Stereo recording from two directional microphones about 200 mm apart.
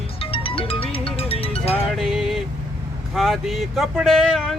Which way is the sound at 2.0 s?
Centre (ahead or behind).